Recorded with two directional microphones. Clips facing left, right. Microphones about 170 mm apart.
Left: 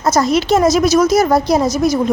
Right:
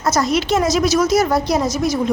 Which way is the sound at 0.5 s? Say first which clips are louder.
Left 5 dB; 45° left (ahead or behind).